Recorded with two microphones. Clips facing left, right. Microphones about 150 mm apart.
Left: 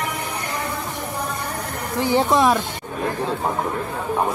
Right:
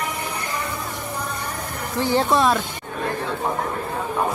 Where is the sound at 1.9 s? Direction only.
15° left (ahead or behind).